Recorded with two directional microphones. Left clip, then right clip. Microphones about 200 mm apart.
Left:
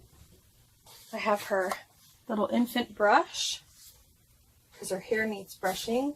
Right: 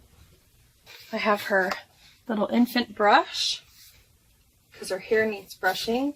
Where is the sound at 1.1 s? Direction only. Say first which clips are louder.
Right 5 dB; 45° right (ahead or behind).